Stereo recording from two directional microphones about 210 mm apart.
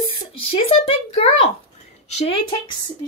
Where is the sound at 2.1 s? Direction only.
25° left (ahead or behind).